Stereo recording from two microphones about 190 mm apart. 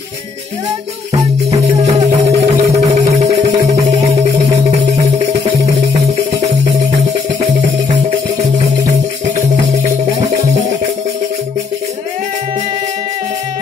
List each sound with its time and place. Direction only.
1.9 s music: 35° right (ahead or behind)
4.6 s music: 35° right (ahead or behind)